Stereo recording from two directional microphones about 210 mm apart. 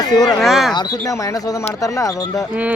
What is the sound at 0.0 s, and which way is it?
Speech, 20° left (ahead or behind).